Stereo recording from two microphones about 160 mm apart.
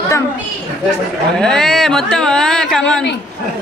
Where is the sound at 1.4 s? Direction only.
5° left (ahead or behind).